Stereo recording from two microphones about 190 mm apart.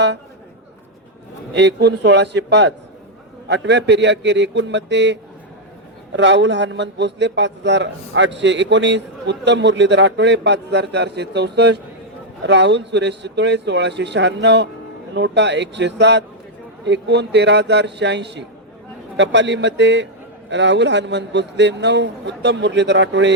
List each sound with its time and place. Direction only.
1.5 s a man's voice: 65° right (ahead or behind)
6.1 s a man's voice: 70° right (ahead or behind)